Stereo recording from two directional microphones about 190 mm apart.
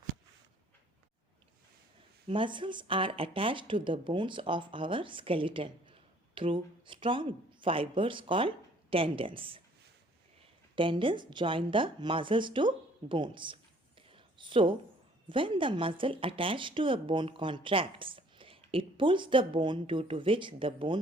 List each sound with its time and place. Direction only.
2.2 s speech: 25° right (ahead or behind)
10.8 s speech: 25° right (ahead or behind)
14.1 s whispering: 25° right (ahead or behind)
15.3 s speech: 25° right (ahead or behind)